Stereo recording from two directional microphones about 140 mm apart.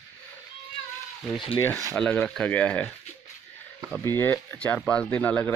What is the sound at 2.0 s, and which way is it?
Speech, 10° left (ahead or behind).